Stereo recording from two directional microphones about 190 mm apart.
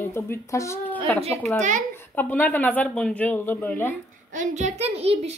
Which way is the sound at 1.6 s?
40° right (ahead or behind).